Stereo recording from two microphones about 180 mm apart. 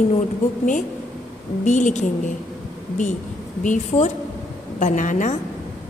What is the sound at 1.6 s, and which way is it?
Speech, 45° left (ahead or behind).